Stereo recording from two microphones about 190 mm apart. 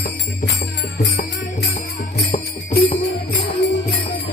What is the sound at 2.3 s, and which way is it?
Jingle bell, 35° left (ahead or behind).